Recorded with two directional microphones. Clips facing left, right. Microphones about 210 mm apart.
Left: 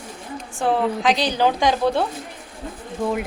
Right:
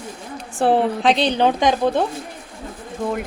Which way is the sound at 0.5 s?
30° right (ahead or behind).